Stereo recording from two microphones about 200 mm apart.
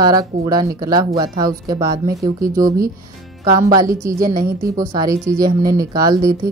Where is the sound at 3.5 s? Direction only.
15° right (ahead or behind).